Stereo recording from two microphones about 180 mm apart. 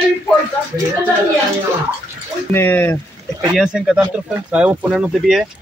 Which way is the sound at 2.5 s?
10° left (ahead or behind).